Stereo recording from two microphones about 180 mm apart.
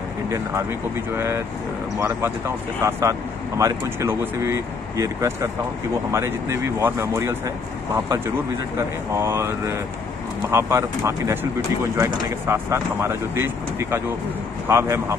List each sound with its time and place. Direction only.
1.1 s speech: 15° right (ahead or behind)